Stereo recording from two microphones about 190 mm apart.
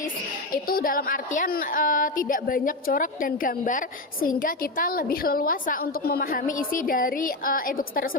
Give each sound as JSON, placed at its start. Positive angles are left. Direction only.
{"t": 0.5, "sound": "a woman's voice", "side_deg": 50}